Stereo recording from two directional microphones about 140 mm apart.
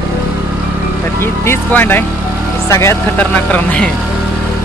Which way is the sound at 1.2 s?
15° left (ahead or behind).